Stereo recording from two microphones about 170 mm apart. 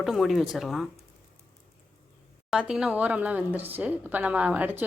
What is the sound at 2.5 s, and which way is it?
A woman's voice, 5° right (ahead or behind).